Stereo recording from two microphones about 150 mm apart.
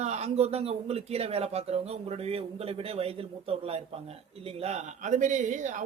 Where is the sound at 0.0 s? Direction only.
50° right (ahead or behind).